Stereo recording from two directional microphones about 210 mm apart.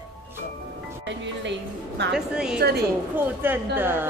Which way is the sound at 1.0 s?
55° right (ahead or behind).